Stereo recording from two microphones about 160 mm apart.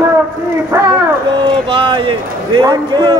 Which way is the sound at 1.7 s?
30° right (ahead or behind).